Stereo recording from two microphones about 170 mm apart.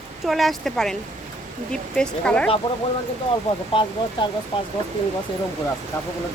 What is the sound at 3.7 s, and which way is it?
Speech, 30° left (ahead or behind).